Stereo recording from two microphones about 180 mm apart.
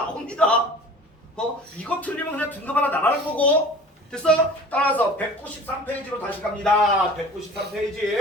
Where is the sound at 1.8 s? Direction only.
10° left (ahead or behind).